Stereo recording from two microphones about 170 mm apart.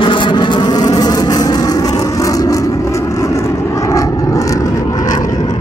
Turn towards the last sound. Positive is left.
turn(degrees=50)  # may be behind; listen again after turning